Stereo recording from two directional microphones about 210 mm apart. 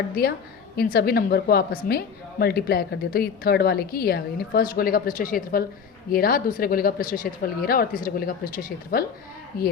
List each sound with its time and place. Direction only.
0.8 s a woman's voice: 45° left (ahead or behind)